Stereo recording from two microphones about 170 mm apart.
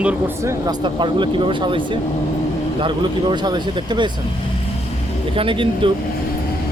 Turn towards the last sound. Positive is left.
turn(degrees=-30)  # may be behind; listen again after turning